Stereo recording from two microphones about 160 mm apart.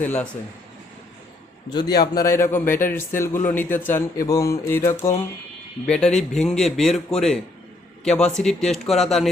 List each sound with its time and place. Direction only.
0.0 s a man's voice: 10° left (ahead or behind)
2.1 s a man's voice: 15° left (ahead or behind)
5.8 s speech: 5° left (ahead or behind)